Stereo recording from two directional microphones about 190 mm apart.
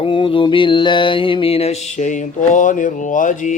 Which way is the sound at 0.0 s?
30° left (ahead or behind).